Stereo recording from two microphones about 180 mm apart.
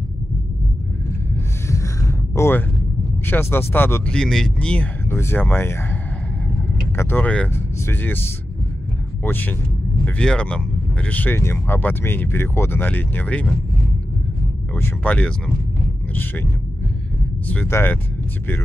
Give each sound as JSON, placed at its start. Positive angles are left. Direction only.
{"t": 1.7, "sound": "a sound", "side_deg": 15}
{"t": 3.3, "sound": "speech", "side_deg": 10}
{"t": 7.0, "sound": "speech", "side_deg": 10}
{"t": 9.2, "sound": "speech", "side_deg": 10}
{"t": 14.8, "sound": "speech", "side_deg": 10}
{"t": 17.5, "sound": "speech", "side_deg": 10}